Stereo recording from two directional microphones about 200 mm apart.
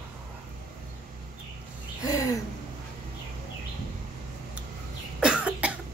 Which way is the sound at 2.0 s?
15° left (ahead or behind).